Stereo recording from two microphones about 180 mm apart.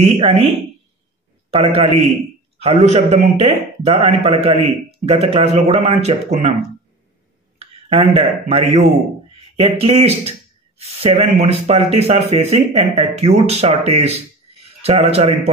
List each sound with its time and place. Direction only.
0.0 s a man's voice: 35° right (ahead or behind)
7.5 s a man's voice: 35° right (ahead or behind)